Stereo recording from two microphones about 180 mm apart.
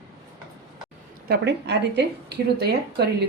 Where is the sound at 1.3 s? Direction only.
70° right (ahead or behind).